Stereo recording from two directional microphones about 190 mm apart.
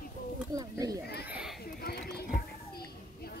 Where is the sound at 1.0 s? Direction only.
55° left (ahead or behind).